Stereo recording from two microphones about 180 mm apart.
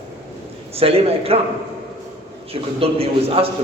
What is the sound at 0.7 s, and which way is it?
Speech, 35° right (ahead or behind).